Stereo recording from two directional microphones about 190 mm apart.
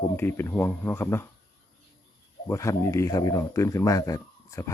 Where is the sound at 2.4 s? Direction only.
15° left (ahead or behind).